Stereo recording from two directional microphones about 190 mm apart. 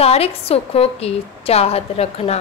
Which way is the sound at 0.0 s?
30° left (ahead or behind).